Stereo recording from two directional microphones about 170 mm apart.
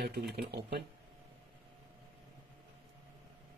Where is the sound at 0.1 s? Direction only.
70° right (ahead or behind).